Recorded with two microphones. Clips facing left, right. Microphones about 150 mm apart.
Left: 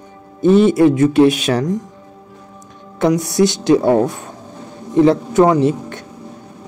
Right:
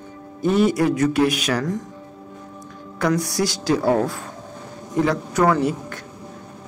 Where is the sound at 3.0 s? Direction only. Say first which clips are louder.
Left 7 dB; 20° left (ahead or behind).